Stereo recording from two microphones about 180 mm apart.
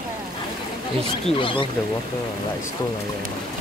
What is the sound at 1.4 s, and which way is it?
Speech, 30° left (ahead or behind).